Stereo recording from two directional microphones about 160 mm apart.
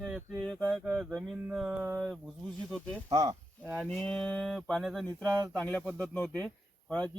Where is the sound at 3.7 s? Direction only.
5° left (ahead or behind).